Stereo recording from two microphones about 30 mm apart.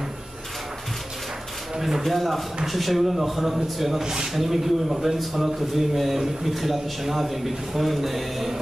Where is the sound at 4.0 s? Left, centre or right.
Centre.